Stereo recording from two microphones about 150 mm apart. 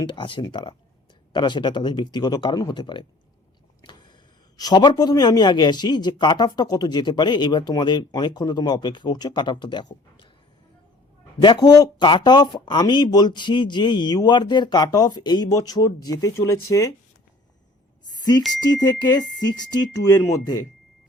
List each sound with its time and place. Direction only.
0.0 s a man's voice: 35° left (ahead or behind)
4.5 s a man's voice: 25° left (ahead or behind)
11.4 s a man's voice: 30° left (ahead or behind)
18.0 s a sound: 25° left (ahead or behind)
18.7 s a man's voice: 25° left (ahead or behind)